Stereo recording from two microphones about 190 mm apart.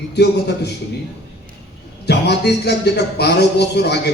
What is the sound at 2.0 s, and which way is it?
A man's voice, 60° left (ahead or behind).